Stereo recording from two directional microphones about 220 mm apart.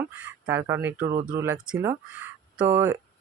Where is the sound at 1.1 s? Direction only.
35° right (ahead or behind).